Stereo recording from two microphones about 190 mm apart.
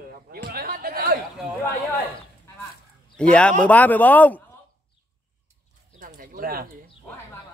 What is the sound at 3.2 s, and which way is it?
A man's voice, 5° left (ahead or behind).